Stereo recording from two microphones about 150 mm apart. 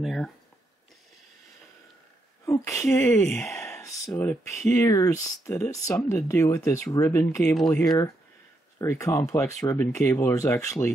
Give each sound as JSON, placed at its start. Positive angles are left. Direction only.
{"t": 0.0, "sound": "a sound", "side_deg": 0}
{"t": 2.4, "sound": "speech", "side_deg": 20}
{"t": 3.7, "sound": "a sound", "side_deg": 20}
{"t": 4.5, "sound": "speech", "side_deg": 0}
{"t": 4.7, "sound": "speech", "side_deg": 20}
{"t": 7.5, "sound": "speech", "side_deg": 5}
{"t": 8.7, "sound": "speech", "side_deg": 20}